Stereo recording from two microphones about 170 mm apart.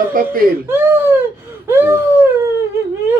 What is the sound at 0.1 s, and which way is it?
Speech, 55° right (ahead or behind).